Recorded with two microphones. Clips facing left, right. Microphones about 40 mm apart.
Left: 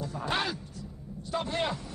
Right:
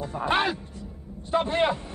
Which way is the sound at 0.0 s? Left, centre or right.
Right.